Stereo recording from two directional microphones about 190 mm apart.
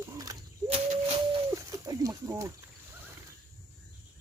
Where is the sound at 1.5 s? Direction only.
20° right (ahead or behind).